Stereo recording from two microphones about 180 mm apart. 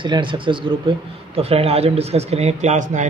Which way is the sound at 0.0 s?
25° right (ahead or behind).